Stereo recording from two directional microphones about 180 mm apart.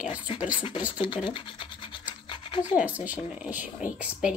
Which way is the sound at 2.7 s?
10° right (ahead or behind).